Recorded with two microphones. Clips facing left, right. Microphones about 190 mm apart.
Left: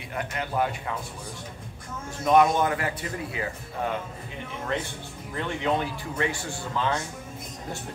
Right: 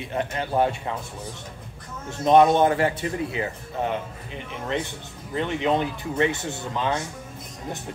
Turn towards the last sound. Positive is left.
turn(degrees=-20)  # may be behind; listen again after turning